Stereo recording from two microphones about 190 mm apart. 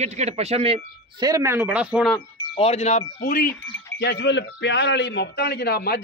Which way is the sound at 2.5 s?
30° left (ahead or behind).